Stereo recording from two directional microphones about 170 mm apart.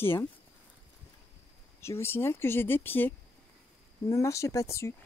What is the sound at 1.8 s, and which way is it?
Speech, 15° left (ahead or behind).